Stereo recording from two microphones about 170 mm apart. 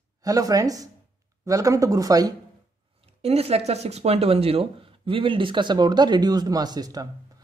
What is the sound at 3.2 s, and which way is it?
Speech, 35° right (ahead or behind).